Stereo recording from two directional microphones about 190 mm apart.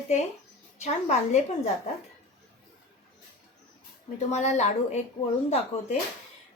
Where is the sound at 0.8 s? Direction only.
35° left (ahead or behind).